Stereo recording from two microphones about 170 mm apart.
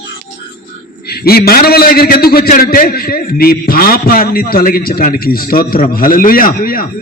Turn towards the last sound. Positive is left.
turn(degrees=55)  # may be behind; listen again after turning